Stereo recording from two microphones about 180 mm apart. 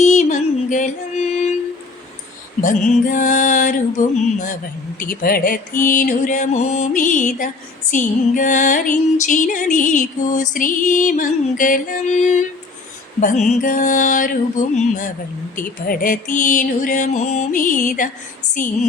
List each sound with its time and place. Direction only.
0.0 s music: 40° left (ahead or behind)
2.6 s music: 45° left (ahead or behind)